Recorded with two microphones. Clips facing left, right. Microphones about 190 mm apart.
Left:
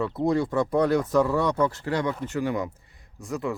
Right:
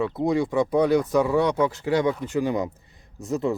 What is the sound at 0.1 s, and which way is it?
Speech, centre (ahead or behind).